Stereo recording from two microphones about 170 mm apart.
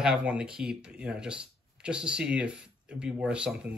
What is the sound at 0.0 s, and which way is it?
Speech, 5° right (ahead or behind).